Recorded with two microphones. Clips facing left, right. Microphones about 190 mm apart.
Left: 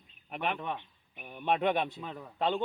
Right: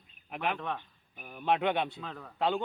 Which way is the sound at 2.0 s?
15° left (ahead or behind).